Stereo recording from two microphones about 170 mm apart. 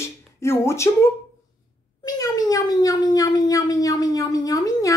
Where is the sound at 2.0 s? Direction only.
20° left (ahead or behind).